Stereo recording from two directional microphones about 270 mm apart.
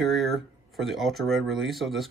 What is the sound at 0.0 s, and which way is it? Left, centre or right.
Speech, centre.